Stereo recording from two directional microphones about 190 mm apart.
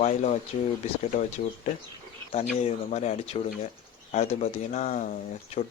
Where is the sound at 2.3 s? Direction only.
35° left (ahead or behind).